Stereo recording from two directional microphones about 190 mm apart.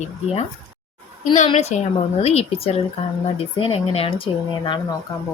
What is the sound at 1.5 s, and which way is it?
A woman's voice, 35° left (ahead or behind).